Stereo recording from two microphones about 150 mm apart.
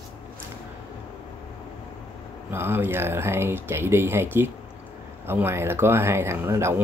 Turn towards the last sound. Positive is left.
turn(degrees=-15)  # may be behind; listen again after turning